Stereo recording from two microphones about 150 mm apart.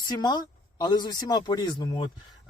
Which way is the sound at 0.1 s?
30° left (ahead or behind).